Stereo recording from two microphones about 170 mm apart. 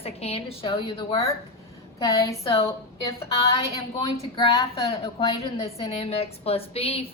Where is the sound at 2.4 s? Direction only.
35° left (ahead or behind).